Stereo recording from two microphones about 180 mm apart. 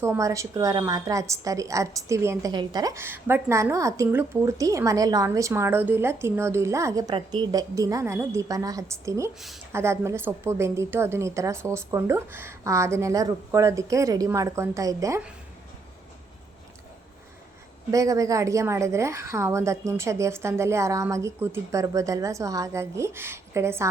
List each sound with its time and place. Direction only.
0.0 s a woman's voice: 15° right (ahead or behind)
17.9 s a woman's voice: 20° right (ahead or behind)